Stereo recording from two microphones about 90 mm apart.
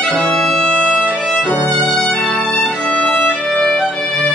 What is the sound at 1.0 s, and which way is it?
Violin, 5° left (ahead or behind).